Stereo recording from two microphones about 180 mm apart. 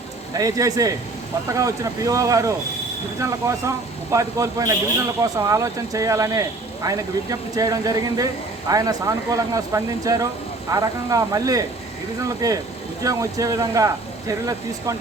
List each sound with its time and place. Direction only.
0.3 s speech: 20° right (ahead or behind)